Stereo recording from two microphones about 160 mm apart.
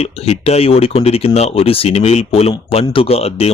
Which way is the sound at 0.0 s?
40° left (ahead or behind).